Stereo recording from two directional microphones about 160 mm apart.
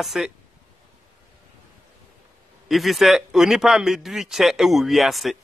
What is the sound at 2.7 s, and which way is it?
A man's voice, centre (ahead or behind).